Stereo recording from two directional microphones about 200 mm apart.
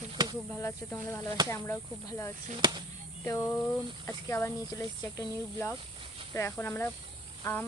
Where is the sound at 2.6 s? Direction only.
20° right (ahead or behind).